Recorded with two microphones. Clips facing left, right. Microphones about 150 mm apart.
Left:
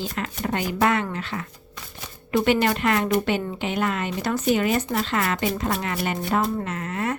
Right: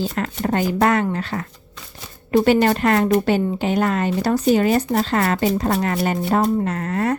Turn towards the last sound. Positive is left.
turn(degrees=-40)  # may be behind; listen again after turning